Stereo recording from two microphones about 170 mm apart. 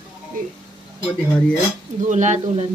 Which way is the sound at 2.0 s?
45° right (ahead or behind).